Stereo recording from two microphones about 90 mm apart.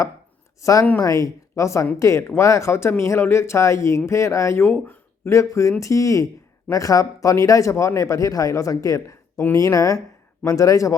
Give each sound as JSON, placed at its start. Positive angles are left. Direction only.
{"t": 0.6, "sound": "speech", "side_deg": 40}